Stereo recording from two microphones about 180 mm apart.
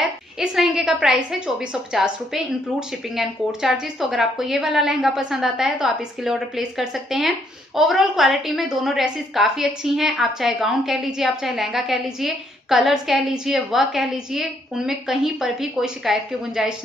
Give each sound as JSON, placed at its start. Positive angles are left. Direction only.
{"t": 0.4, "sound": "a woman's voice", "side_deg": -5}